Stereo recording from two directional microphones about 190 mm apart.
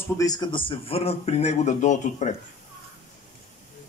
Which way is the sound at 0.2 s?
20° left (ahead or behind).